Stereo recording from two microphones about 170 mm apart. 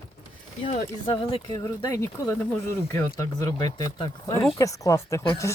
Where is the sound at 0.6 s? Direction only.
35° left (ahead or behind).